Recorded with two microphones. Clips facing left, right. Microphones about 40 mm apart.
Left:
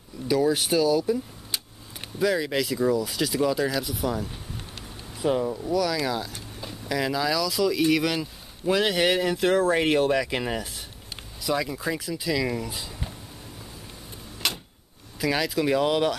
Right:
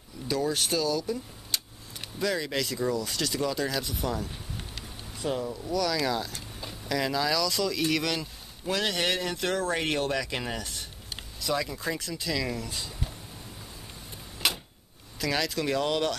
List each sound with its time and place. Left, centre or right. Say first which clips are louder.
0.3 s speech: left 6 dB; centre
5.1 s speech: left 6 dB; centre
14.4 s a sound: even; centre
15.1 s speech: left 4 dB; centre